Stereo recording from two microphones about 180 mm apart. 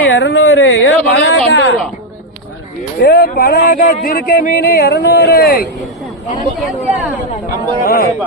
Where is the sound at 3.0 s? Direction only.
60° left (ahead or behind).